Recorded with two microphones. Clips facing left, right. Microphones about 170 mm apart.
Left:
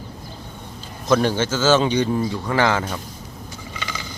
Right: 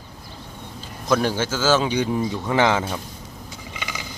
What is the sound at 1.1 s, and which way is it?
A man's voice, 5° right (ahead or behind).